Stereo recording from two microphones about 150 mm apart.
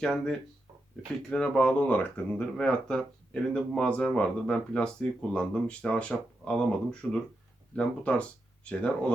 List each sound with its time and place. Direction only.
0.0 s speech: 5° left (ahead or behind)